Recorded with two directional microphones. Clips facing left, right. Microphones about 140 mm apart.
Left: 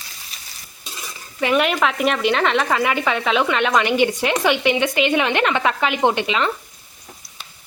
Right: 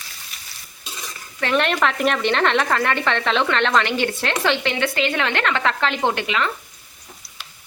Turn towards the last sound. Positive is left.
turn(degrees=20)  # may be behind; listen again after turning